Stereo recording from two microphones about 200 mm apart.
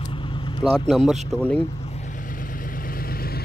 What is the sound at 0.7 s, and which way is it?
Speech, 5° left (ahead or behind).